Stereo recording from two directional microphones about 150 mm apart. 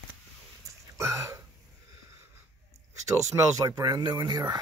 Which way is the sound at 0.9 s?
20° right (ahead or behind).